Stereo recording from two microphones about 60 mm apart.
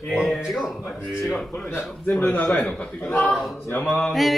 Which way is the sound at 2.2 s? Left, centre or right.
Left.